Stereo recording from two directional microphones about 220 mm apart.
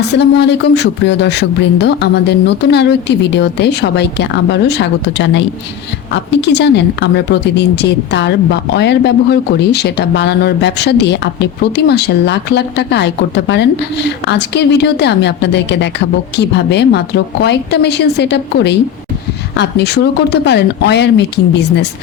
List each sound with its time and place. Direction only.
0.1 s speech: 50° left (ahead or behind)